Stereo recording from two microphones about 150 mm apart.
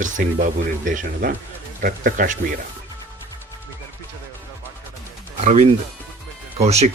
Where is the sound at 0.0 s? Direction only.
60° right (ahead or behind).